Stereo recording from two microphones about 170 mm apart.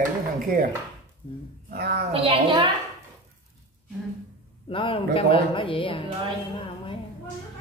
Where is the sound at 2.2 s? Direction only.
30° right (ahead or behind).